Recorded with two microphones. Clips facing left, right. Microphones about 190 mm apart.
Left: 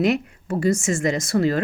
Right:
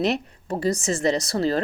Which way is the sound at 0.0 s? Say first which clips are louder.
Left 3 dB; 35° right (ahead or behind).